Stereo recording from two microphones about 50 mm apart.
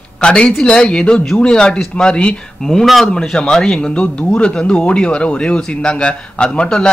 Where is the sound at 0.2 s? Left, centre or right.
Centre.